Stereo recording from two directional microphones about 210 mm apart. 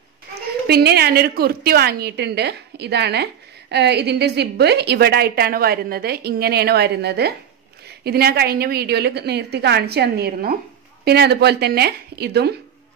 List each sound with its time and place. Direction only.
0.3 s a woman's voice: 50° right (ahead or behind)